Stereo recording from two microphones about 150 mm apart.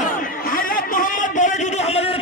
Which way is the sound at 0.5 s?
65° left (ahead or behind).